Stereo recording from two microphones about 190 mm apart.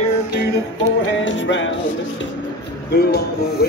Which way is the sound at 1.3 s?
75° left (ahead or behind).